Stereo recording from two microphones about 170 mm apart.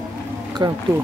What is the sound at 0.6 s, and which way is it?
Speech, 25° right (ahead or behind).